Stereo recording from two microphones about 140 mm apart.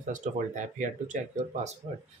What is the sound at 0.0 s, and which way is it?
Speech, 65° right (ahead or behind).